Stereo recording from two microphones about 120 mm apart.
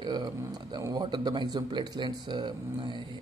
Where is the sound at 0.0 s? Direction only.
40° right (ahead or behind).